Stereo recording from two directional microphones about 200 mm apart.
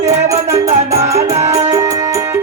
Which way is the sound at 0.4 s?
15° right (ahead or behind).